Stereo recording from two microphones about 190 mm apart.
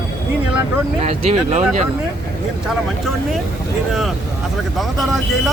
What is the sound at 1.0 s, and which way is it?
Speech, 35° right (ahead or behind).